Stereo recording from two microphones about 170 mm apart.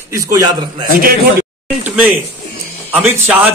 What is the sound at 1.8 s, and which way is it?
Speech, 10° right (ahead or behind).